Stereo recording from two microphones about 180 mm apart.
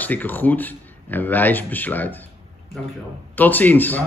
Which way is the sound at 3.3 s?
10° left (ahead or behind).